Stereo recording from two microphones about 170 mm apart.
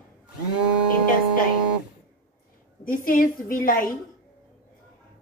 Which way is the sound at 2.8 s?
55° left (ahead or behind).